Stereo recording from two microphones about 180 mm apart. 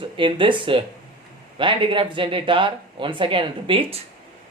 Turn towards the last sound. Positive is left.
turn(degrees=-30)  # may be behind; listen again after turning